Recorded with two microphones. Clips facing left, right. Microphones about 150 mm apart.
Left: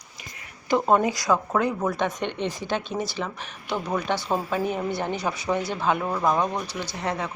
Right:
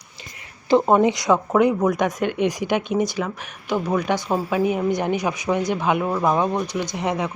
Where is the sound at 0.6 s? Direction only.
25° right (ahead or behind).